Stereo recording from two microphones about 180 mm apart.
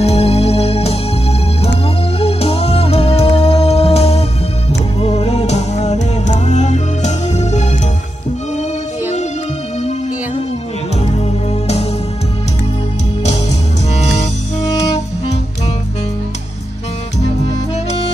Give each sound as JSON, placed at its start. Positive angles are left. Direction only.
{"t": 0.0, "sound": "music", "side_deg": 35}
{"t": 2.1, "sound": "music", "side_deg": 35}
{"t": 11.1, "sound": "music", "side_deg": 35}
{"t": 13.9, "sound": "music", "side_deg": 40}